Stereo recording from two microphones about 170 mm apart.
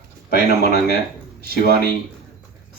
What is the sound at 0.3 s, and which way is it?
Speech, 70° left (ahead or behind).